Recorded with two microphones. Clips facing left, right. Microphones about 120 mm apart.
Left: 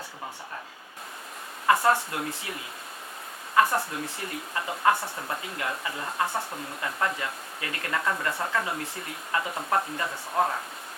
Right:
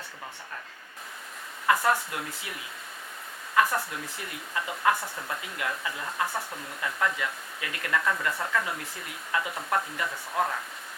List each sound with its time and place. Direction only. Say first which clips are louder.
1.6 s speech: left 2 dB; 30° left (ahead or behind)
3.5 s speech: left 2 dB; 30° left (ahead or behind)